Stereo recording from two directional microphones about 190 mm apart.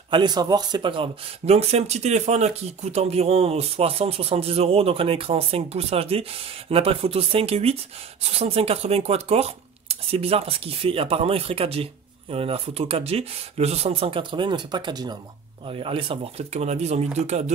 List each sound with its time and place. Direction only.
0.1 s speech: 20° right (ahead or behind)